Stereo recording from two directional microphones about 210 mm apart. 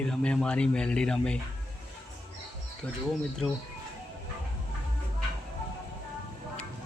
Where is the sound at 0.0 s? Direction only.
5° left (ahead or behind).